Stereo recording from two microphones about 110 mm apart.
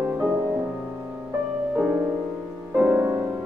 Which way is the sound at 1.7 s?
15° right (ahead or behind).